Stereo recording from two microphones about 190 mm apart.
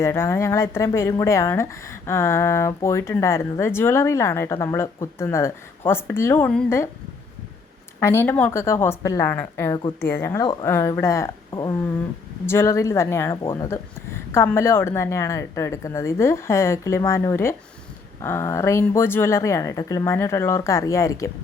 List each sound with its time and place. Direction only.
0.0 s a woman's voice: 15° left (ahead or behind)
7.9 s a woman's voice: 10° left (ahead or behind)
10.4 s speech: 25° left (ahead or behind)
10.7 s a woman's voice: 15° left (ahead or behind)